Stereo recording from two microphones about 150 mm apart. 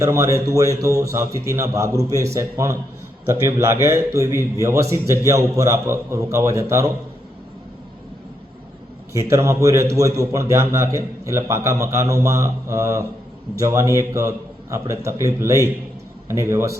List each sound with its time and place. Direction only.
0.0 s a man's voice: 20° right (ahead or behind)
9.1 s a man's voice: 20° right (ahead or behind)